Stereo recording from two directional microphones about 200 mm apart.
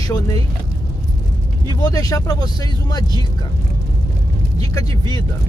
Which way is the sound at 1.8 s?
20° left (ahead or behind).